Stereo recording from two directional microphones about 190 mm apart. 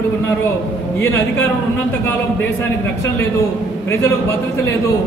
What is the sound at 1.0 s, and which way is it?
Speech, 10° left (ahead or behind).